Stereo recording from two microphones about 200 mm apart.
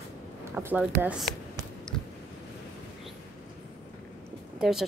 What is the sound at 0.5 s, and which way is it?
Speech, 10° right (ahead or behind).